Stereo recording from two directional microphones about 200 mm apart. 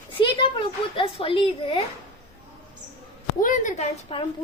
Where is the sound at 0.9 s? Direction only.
25° left (ahead or behind).